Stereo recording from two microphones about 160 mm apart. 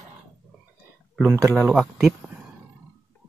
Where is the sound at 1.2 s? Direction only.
15° right (ahead or behind).